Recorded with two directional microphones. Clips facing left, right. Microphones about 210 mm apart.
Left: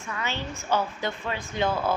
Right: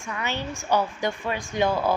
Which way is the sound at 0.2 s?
15° right (ahead or behind).